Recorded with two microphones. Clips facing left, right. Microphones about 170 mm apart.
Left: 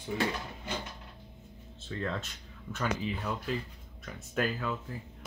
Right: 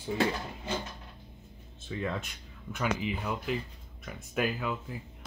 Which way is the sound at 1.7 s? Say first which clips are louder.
Right 1 dB; 15° right (ahead or behind).